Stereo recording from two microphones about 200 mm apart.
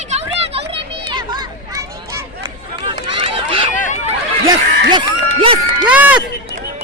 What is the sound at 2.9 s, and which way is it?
Run, 25° right (ahead or behind).